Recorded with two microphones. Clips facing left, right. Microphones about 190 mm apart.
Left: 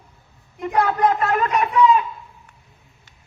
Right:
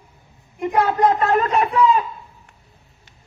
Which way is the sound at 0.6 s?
20° right (ahead or behind).